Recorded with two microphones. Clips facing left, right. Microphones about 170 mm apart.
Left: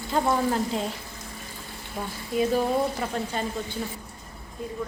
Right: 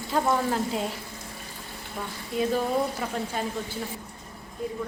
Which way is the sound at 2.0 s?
25° left (ahead or behind).